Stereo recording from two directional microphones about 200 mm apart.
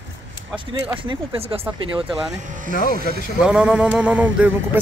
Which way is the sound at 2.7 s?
40° left (ahead or behind).